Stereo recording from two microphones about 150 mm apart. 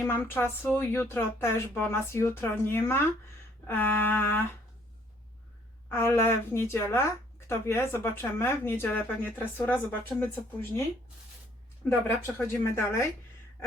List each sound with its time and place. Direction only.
0.0 s speech: 15° left (ahead or behind)
5.9 s speech: 15° left (ahead or behind)
11.9 s speech: 15° left (ahead or behind)